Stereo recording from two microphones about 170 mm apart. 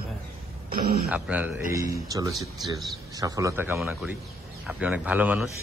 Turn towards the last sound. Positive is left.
turn(degrees=-10)  # may be behind; listen again after turning